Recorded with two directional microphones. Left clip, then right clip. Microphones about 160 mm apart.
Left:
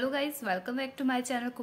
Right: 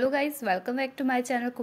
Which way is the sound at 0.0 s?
30° right (ahead or behind).